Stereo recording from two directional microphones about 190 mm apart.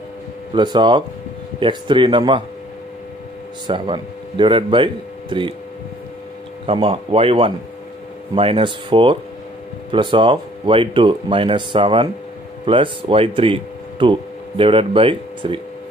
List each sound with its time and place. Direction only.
0.5 s speech: 25° right (ahead or behind)
3.6 s speech: 25° right (ahead or behind)
6.6 s speech: 30° right (ahead or behind)